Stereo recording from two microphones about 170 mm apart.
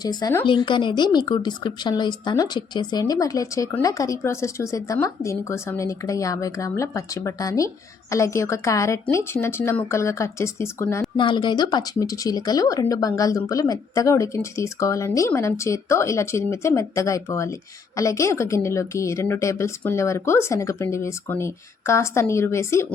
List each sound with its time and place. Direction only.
0.0 s a woman's voice: 25° left (ahead or behind)
11.2 s a woman's voice: 25° left (ahead or behind)